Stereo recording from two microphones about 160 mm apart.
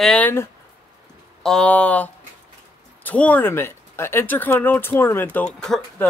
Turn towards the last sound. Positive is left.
turn(degrees=5)  # may be behind; listen again after turning